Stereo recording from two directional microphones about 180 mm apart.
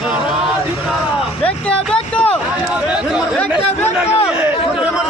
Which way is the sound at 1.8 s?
5° left (ahead or behind).